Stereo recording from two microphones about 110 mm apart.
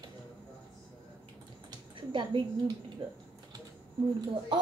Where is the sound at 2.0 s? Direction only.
45° right (ahead or behind).